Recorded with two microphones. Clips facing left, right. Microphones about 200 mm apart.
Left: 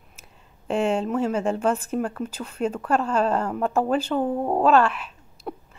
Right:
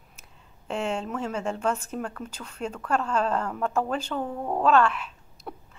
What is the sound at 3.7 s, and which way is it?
Speech, 5° left (ahead or behind).